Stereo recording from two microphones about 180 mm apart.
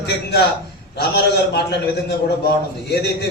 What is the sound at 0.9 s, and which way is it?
A man's voice, 65° left (ahead or behind).